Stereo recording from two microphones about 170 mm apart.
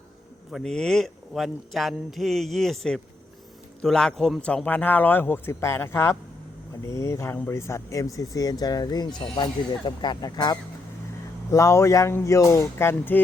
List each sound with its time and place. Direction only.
0.5 s a man's voice: 5° left (ahead or behind)